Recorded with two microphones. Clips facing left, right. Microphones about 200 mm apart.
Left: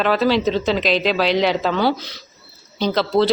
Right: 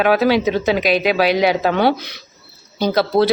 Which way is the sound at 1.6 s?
60° right (ahead or behind).